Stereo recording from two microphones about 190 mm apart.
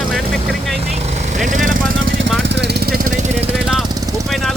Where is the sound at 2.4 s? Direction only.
65° right (ahead or behind).